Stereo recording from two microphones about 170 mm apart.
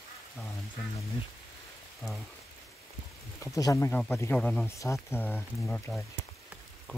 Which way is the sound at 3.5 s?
20° left (ahead or behind).